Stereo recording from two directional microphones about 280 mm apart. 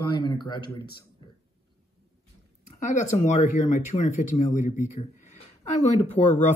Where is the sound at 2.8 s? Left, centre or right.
Left.